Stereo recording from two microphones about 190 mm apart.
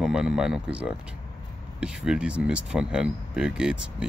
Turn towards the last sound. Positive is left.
turn(degrees=-5)  # may be behind; listen again after turning